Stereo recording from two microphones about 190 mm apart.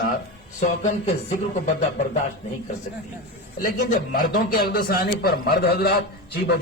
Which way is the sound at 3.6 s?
45° left (ahead or behind).